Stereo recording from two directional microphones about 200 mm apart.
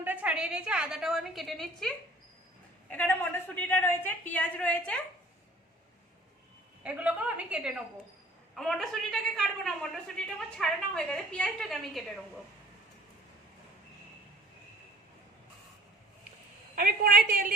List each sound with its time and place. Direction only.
0.0 s a woman's voice: 10° right (ahead or behind)
2.9 s a woman's voice: 10° left (ahead or behind)
6.8 s a woman's voice: 5° right (ahead or behind)
16.7 s a woman's voice: 45° right (ahead or behind)